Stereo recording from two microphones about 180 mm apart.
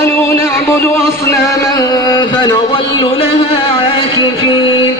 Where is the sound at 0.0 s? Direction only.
15° left (ahead or behind); by 3.2 s 30° left (ahead or behind).